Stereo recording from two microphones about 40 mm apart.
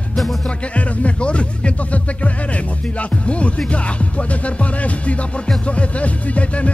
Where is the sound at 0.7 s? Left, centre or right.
Left.